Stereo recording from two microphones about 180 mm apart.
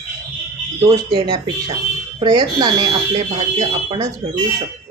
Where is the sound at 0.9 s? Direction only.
20° right (ahead or behind).